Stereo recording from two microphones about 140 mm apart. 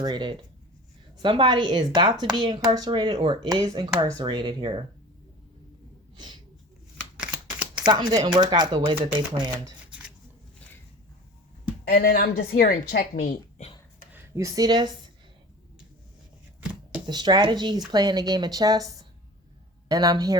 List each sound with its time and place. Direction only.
0.0 s a woman's voice: 30° right (ahead or behind)
6.1 s speech: 30° right (ahead or behind)
7.2 s a sound: 5° right (ahead or behind)
7.9 s a woman's voice: 30° right (ahead or behind)
11.9 s a woman's voice: 90° left; by 13.7 s 65° left (ahead or behind)
14.1 s speech: 25° right (ahead or behind)
16.6 s a sound: 10° right (ahead or behind)
17.1 s speech: 30° right (ahead or behind)